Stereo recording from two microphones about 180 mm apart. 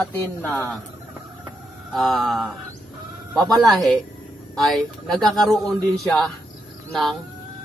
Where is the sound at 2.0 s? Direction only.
Centre (ahead or behind).